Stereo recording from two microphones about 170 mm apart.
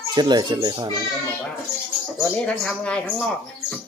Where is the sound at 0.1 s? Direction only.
25° right (ahead or behind).